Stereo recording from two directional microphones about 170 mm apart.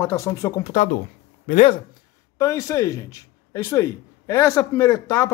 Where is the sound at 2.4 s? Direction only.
20° left (ahead or behind).